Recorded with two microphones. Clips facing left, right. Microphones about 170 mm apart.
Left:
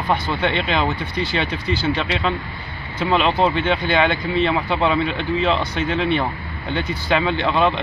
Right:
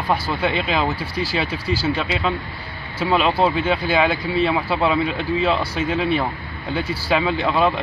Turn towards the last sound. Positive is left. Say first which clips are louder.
# even
turn(degrees=-5)  # may be behind; listen again after turning